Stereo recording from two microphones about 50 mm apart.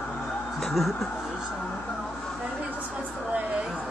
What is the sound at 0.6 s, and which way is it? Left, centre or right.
Speech, centre.